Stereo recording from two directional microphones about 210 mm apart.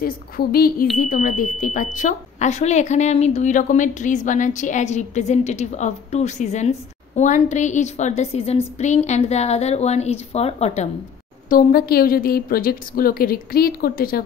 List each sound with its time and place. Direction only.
0.0 s a woman's voice: 45° left (ahead or behind)
11.4 s a woman's voice: 45° left (ahead or behind)